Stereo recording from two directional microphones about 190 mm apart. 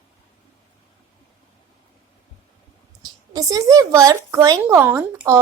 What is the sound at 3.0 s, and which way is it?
A woman's voice, 20° right (ahead or behind).